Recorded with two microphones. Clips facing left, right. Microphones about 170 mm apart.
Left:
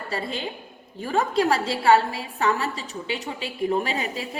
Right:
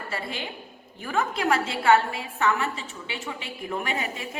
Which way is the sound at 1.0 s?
35° left (ahead or behind).